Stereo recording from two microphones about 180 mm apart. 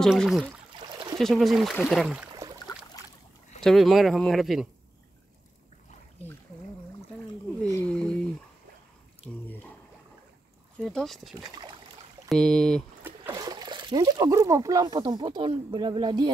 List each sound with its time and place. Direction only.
0.0 s speech: centre (ahead or behind)
0.7 s trickle: 25° right (ahead or behind)
1.1 s speech: centre (ahead or behind)
3.6 s speech: centre (ahead or behind)
7.7 s speech: 5° left (ahead or behind)
9.3 s speech: 5° left (ahead or behind)
10.8 s speech: centre (ahead or behind)
11.4 s boat: 20° right (ahead or behind)
12.3 s speech: centre (ahead or behind)
13.0 s speech: 15° right (ahead or behind)